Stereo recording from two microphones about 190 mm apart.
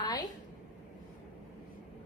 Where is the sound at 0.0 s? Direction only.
20° left (ahead or behind).